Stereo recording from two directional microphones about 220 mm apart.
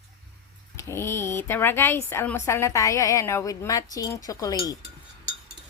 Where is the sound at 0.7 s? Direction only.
10° left (ahead or behind).